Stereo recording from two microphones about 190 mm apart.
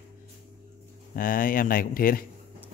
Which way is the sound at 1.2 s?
50° left (ahead or behind).